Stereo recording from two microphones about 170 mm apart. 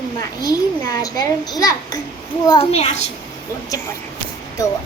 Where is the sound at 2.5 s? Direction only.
35° left (ahead or behind).